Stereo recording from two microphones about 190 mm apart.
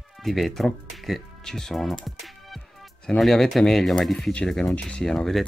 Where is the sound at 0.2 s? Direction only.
Centre (ahead or behind).